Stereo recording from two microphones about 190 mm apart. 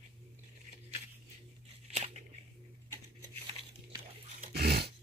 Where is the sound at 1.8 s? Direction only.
35° right (ahead or behind).